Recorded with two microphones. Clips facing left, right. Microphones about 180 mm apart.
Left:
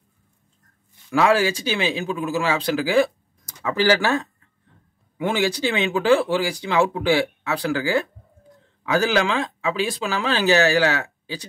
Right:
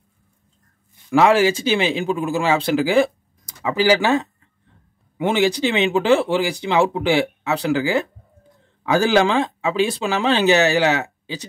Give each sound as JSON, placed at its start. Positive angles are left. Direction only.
{"t": 1.1, "sound": "speech", "side_deg": -25}
{"t": 8.9, "sound": "speech", "side_deg": -30}